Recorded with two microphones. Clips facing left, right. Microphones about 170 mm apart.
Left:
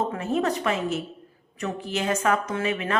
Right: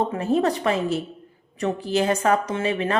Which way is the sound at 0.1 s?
35° right (ahead or behind).